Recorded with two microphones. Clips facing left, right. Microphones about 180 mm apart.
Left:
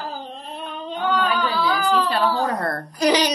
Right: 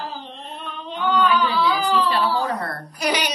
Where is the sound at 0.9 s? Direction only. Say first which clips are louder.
Right 2 dB; 40° left (ahead or behind).